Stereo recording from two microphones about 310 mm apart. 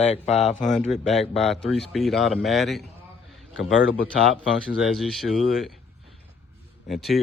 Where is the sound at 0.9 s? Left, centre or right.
Centre.